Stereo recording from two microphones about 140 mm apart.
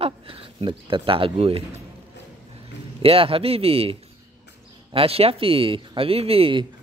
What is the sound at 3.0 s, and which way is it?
Speech, 45° right (ahead or behind).